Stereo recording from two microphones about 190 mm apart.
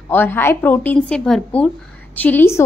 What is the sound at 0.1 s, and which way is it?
A woman's voice, 10° left (ahead or behind).